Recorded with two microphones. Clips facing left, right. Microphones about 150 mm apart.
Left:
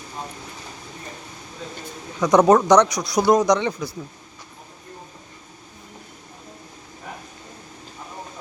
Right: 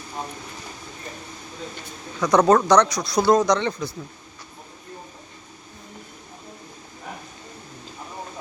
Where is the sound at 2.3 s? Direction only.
20° left (ahead or behind).